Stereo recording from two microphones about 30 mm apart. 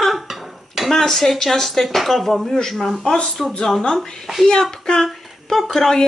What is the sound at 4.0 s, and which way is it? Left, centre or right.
Speech, centre.